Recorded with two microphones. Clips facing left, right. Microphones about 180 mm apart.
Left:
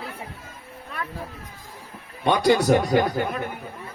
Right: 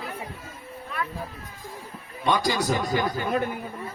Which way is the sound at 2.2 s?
60° left (ahead or behind).